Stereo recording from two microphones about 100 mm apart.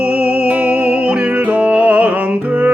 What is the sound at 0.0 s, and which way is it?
Music, 10° right (ahead or behind).